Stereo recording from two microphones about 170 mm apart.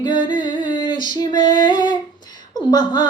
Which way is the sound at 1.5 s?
25° left (ahead or behind).